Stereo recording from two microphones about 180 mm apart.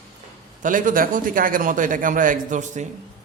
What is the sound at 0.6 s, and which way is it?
A man's voice, 50° right (ahead or behind).